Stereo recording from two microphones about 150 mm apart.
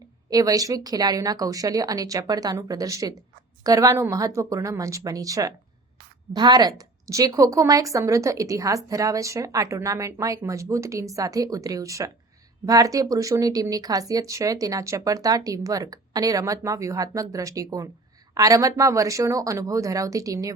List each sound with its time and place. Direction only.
0.3 s a woman's voice: 25° right (ahead or behind)